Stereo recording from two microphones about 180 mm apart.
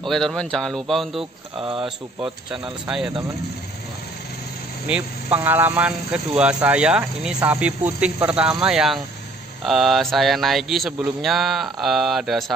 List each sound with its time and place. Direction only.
0.0 s speech: centre (ahead or behind)
1.6 s speech: 30° right (ahead or behind)
4.8 s speech: 10° right (ahead or behind)